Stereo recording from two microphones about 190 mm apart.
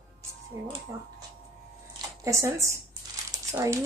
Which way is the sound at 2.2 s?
15° right (ahead or behind).